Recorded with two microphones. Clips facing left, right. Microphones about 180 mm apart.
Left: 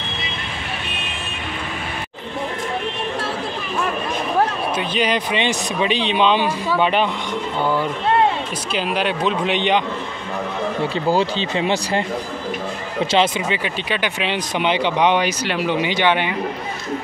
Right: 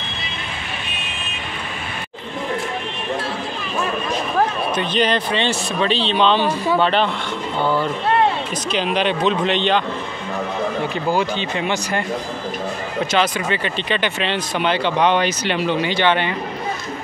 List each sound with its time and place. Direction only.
4.7 s speech: 10° left (ahead or behind)
8.7 s speech: 5° left (ahead or behind)
10.8 s speech: 35° left (ahead or behind)
13.0 s speech: 30° left (ahead or behind)
13.5 s speech: 10° left (ahead or behind)